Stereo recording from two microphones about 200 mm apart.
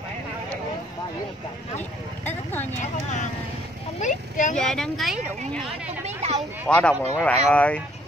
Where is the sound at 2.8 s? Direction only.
35° left (ahead or behind).